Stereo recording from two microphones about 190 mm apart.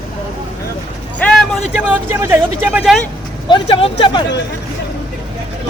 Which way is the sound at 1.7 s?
10° right (ahead or behind).